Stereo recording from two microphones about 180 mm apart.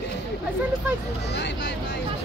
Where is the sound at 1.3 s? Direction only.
75° left (ahead or behind).